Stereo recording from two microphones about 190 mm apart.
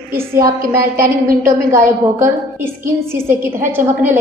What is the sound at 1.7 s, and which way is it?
A woman's voice, 15° right (ahead or behind).